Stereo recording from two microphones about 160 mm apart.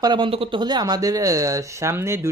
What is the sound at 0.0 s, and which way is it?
Speech, 30° right (ahead or behind).